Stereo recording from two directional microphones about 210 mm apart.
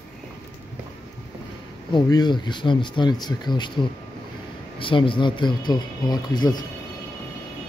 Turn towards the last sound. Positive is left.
turn(degrees=20)  # may be behind; listen again after turning